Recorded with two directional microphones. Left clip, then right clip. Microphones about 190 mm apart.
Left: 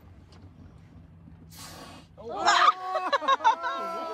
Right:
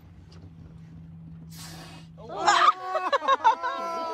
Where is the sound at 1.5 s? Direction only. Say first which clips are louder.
Even; 20° left (ahead or behind).